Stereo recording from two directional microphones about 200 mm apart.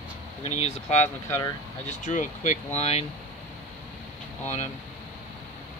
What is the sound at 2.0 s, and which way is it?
Speech, 40° left (ahead or behind).